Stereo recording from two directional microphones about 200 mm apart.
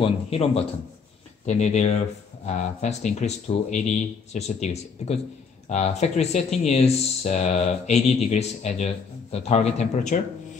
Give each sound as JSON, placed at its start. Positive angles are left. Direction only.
{"t": 0.0, "sound": "speech", "side_deg": 30}